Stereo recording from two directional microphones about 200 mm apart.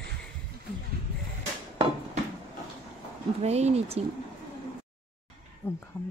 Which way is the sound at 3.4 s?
30° right (ahead or behind).